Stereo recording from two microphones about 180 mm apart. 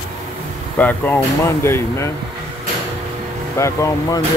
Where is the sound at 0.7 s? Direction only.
10° left (ahead or behind).